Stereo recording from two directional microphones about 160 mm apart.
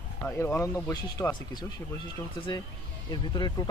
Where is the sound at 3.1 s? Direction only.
30° left (ahead or behind).